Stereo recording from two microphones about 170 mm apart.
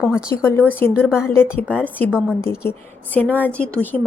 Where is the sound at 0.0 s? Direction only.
5° right (ahead or behind).